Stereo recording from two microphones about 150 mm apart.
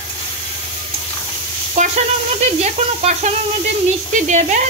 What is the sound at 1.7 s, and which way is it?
Speech, 50° right (ahead or behind).